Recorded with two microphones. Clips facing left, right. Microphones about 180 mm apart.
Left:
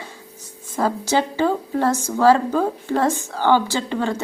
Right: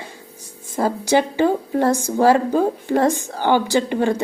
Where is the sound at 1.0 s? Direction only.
15° right (ahead or behind).